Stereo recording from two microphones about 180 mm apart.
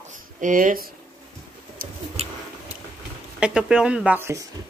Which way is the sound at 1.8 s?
55° right (ahead or behind).